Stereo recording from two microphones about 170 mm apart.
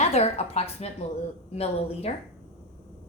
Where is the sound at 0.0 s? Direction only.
40° left (ahead or behind).